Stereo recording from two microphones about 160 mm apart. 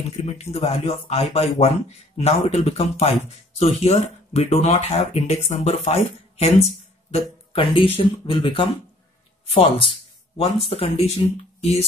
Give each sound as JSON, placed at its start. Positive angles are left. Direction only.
{"t": 0.2, "sound": "speech", "side_deg": 40}